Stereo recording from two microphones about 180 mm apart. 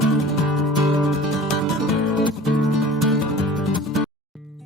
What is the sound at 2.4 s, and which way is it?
Music, centre (ahead or behind).